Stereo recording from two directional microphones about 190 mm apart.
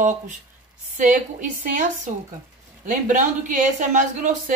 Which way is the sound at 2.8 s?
40° right (ahead or behind).